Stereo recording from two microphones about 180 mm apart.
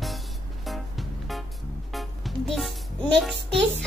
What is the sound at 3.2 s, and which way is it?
Speech, centre (ahead or behind).